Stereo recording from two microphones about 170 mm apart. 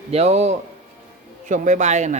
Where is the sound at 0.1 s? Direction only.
40° right (ahead or behind).